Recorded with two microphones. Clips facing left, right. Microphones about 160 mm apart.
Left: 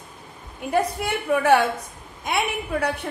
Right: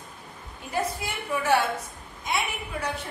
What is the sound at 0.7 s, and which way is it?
Speech, 55° left (ahead or behind).